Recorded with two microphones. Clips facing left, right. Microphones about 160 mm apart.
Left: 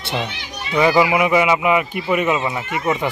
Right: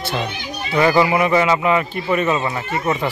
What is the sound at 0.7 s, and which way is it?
Speech, 10° left (ahead or behind).